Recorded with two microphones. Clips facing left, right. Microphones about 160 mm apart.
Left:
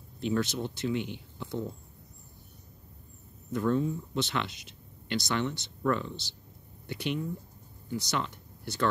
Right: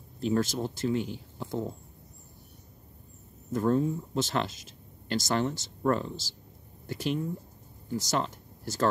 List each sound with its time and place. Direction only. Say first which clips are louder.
0.2 s speech: right 2 dB; 40° right (ahead or behind)
3.5 s speech: right 2 dB; 40° right (ahead or behind)